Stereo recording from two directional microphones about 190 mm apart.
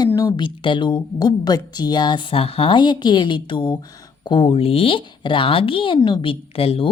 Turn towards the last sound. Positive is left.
turn(degrees=30)  # may be behind; listen again after turning